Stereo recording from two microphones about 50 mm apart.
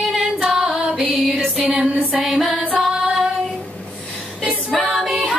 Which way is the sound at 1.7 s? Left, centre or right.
Centre.